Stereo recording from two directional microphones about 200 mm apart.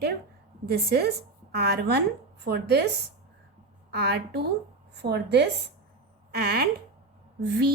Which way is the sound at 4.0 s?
50° right (ahead or behind).